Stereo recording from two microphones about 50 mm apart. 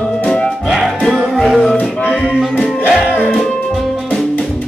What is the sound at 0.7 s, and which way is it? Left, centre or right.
Music, centre.